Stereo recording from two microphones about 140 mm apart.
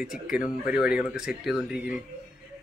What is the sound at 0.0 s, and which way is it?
Speech, 5° right (ahead or behind).